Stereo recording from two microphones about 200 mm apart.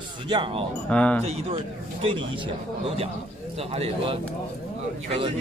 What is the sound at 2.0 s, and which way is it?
Speech, 25° right (ahead or behind).